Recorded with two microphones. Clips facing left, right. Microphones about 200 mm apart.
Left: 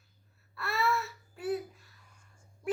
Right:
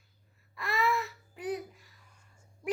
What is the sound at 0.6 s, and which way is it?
Babbling, 15° right (ahead or behind).